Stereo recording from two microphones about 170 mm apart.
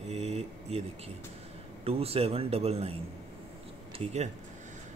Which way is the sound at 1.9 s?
35° right (ahead or behind).